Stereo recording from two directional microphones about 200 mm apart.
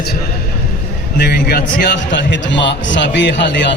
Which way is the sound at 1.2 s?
55° left (ahead or behind).